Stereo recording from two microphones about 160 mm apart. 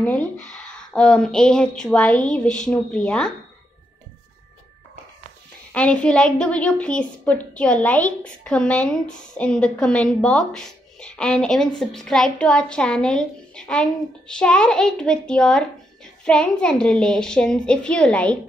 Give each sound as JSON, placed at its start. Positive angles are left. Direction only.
{"t": 0.0, "sound": "a sound", "side_deg": 10}
{"t": 0.5, "sound": "a woman's voice", "side_deg": 5}
{"t": 5.7, "sound": "a woman's voice", "side_deg": 5}